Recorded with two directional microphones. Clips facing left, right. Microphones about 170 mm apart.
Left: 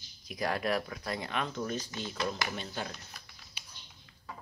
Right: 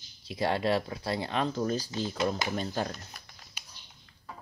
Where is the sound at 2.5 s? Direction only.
40° right (ahead or behind).